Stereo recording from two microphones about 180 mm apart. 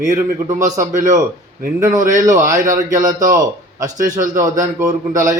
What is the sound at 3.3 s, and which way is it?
Speech, 20° right (ahead or behind).